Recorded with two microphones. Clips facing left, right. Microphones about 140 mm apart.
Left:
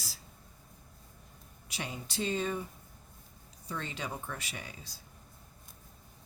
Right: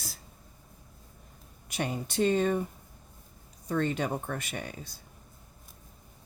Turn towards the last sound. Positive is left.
turn(degrees=-50)  # may be behind; listen again after turning